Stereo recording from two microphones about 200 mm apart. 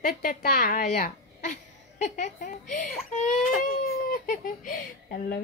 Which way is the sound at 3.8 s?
45° left (ahead or behind).